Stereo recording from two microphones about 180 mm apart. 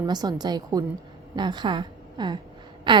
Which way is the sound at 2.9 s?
25° right (ahead or behind).